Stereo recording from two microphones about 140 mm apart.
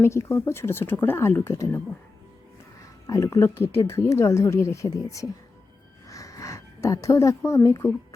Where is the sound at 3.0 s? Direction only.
20° left (ahead or behind).